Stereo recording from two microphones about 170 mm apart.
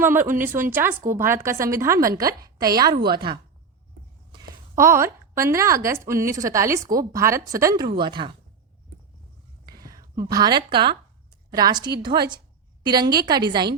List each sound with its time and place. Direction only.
0.0 s a woman's voice: 15° right (ahead or behind)
4.7 s a woman's voice: 15° right (ahead or behind)
9.6 s a woman's voice: 25° right (ahead or behind)